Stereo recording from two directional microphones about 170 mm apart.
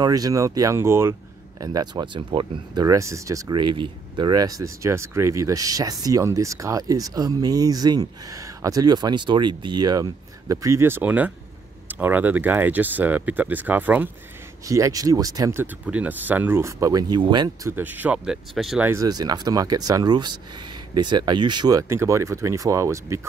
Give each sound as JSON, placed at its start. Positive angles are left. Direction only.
{"t": 0.0, "sound": "speech", "side_deg": -20}
{"t": 17.7, "sound": "speech", "side_deg": -10}
{"t": 18.9, "sound": "speech", "side_deg": -20}